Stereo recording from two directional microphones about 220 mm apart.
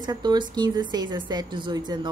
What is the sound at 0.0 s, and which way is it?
A woman's voice, 20° right (ahead or behind).